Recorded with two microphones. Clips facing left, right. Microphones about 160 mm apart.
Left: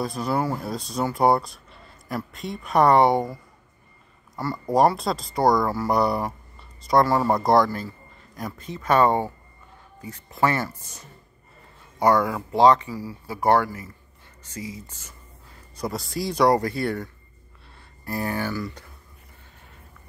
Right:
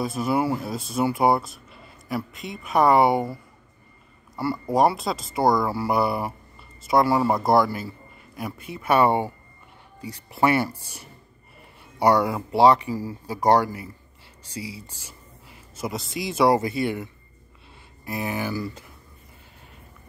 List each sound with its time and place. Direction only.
0.0 s speech: 5° right (ahead or behind)
4.4 s speech: 5° right (ahead or behind)
12.2 s speech: 20° right (ahead or behind)
12.9 s speech: 45° right (ahead or behind)
13.4 s speech: 15° right (ahead or behind)
15.8 s speech: centre (ahead or behind)
18.1 s speech: 10° right (ahead or behind)